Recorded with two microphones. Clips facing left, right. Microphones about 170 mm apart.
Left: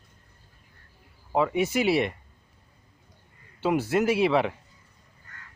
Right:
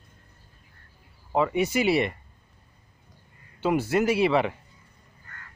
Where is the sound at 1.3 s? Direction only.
Centre (ahead or behind).